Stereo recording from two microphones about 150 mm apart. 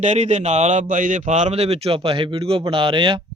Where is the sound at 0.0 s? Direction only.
50° right (ahead or behind); by 3.2 s 30° right (ahead or behind).